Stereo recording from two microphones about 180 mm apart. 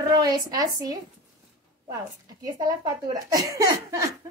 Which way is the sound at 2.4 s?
20° right (ahead or behind).